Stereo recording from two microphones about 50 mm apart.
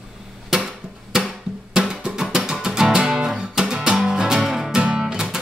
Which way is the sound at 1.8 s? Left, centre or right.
Centre.